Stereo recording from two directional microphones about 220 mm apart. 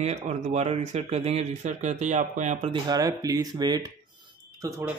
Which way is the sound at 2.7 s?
15° right (ahead or behind).